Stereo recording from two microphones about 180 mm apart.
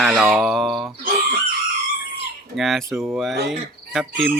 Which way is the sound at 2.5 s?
Centre (ahead or behind).